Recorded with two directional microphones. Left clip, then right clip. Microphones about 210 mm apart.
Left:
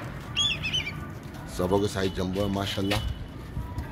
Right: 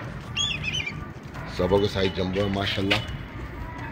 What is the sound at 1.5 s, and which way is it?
Speech, 10° left (ahead or behind).